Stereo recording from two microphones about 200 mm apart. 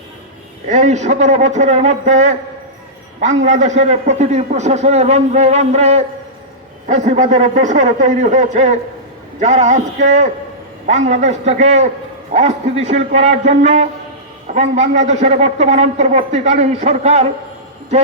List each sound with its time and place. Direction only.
0.7 s a man's voice: 35° right (ahead or behind)
10.8 s a man's voice: 35° right (ahead or behind)